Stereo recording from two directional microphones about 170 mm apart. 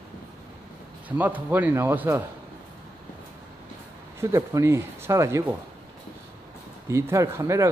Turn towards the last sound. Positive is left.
turn(degrees=-15)  # may be behind; listen again after turning